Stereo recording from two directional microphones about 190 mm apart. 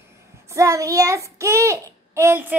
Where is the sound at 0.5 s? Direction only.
15° right (ahead or behind).